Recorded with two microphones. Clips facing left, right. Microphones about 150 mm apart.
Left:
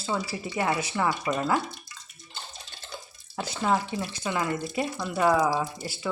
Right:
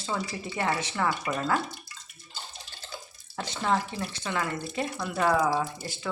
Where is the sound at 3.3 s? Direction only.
10° left (ahead or behind).